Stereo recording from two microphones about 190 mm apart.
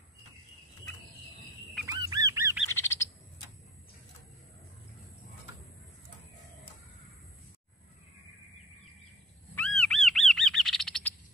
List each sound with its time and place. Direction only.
1.9 s goose: 15° right (ahead or behind)
2.7 s bird: 15° left (ahead or behind)
9.6 s bird: 5° left (ahead or behind)